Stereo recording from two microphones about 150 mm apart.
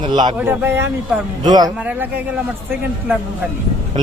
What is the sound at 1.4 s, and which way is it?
Speech, 25° right (ahead or behind).